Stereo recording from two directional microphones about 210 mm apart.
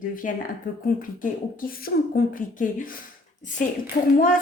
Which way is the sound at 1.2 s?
45° left (ahead or behind).